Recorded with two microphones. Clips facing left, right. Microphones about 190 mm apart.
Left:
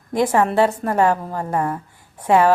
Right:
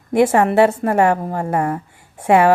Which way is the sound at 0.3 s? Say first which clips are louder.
Right 3 dB; 70° right (ahead or behind).